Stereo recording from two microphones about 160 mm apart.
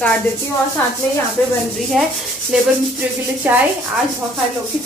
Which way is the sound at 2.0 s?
Centre (ahead or behind).